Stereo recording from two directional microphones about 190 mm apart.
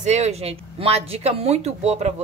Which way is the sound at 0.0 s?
35° right (ahead or behind).